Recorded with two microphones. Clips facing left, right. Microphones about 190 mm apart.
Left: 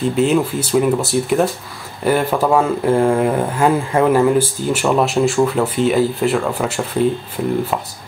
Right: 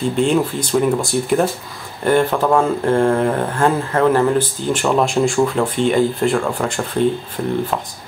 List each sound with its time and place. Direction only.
0.0 s speech: 5° left (ahead or behind)